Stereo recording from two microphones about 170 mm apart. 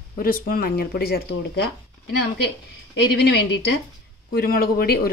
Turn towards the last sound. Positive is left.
turn(degrees=60)  # may be behind; listen again after turning